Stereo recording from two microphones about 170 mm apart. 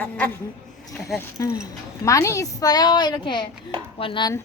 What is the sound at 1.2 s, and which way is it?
A woman's voice, 20° left (ahead or behind).